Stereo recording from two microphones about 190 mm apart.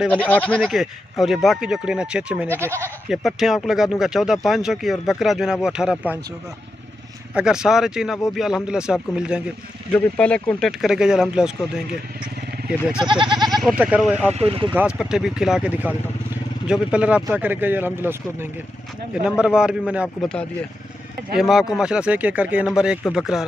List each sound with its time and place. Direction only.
0.1 s speech: 10° left (ahead or behind); by 2.8 s 15° right (ahead or behind)
3.1 s speech: centre (ahead or behind)
7.3 s speech: 5° right (ahead or behind)
9.9 s speech: 5° left (ahead or behind)
13.0 s goat: 25° right (ahead or behind)
13.5 s speech: centre (ahead or behind)
14.3 s speech: 30° right (ahead or behind)
14.7 s speech: 5° right (ahead or behind)